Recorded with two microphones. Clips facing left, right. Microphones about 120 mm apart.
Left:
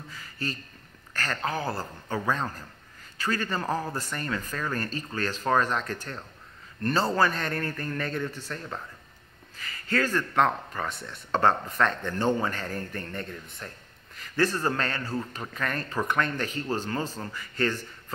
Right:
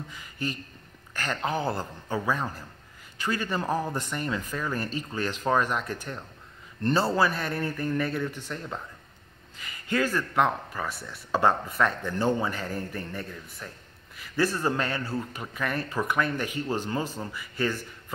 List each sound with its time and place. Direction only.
0.1 s speech: 15° right (ahead or behind)